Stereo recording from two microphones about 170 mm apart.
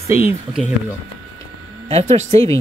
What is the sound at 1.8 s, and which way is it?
Speech, 40° right (ahead or behind).